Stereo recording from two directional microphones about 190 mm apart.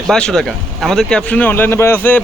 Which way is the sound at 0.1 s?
5° left (ahead or behind).